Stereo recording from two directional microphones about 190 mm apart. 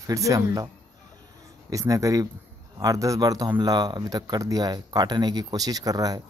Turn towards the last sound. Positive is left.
turn(degrees=-20)  # may be behind; listen again after turning